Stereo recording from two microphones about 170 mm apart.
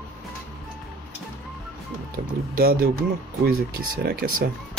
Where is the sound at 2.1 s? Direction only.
65° right (ahead or behind).